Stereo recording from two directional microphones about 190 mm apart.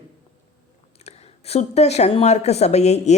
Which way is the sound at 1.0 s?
35° left (ahead or behind).